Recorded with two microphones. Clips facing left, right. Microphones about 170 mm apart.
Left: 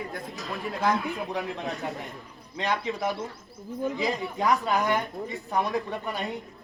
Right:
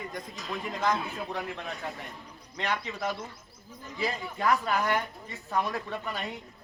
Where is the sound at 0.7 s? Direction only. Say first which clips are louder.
Left 3 dB; 10° left (ahead or behind).